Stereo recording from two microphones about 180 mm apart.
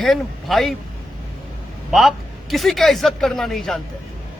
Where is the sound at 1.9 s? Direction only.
Centre (ahead or behind).